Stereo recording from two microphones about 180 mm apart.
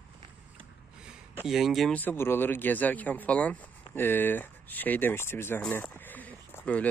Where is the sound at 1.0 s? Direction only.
5° right (ahead or behind).